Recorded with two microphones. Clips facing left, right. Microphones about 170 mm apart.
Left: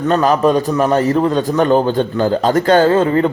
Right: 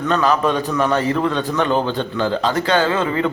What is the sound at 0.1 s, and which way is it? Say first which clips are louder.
A man's voice: left 5 dB; 40° left (ahead or behind).